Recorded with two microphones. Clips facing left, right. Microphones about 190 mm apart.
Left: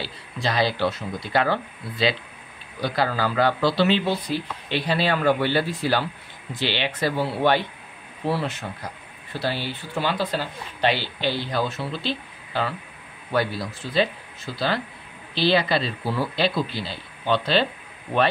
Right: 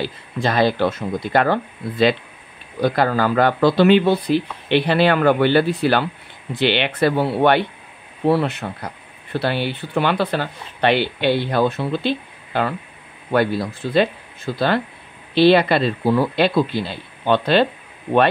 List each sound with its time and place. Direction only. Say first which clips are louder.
0.0 s speech: right 6 dB; 50° right (ahead or behind)